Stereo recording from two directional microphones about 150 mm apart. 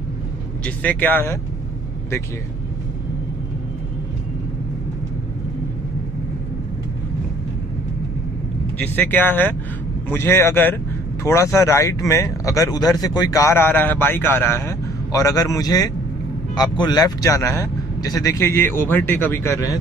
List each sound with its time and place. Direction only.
0.7 s speech: 10° left (ahead or behind)
8.7 s speech: 10° left (ahead or behind)